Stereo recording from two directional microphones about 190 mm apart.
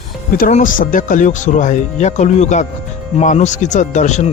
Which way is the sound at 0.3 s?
45° left (ahead or behind).